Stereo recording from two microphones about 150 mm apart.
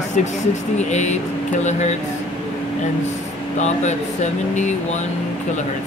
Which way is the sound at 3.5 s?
50° left (ahead or behind).